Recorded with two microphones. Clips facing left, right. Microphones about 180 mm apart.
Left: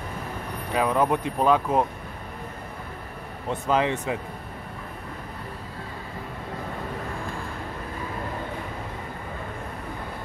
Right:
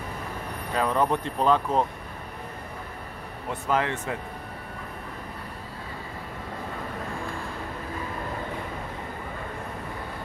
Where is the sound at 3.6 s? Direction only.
20° left (ahead or behind).